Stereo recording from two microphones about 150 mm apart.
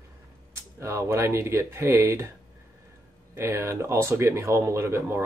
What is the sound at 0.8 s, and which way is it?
Speech, 20° right (ahead or behind).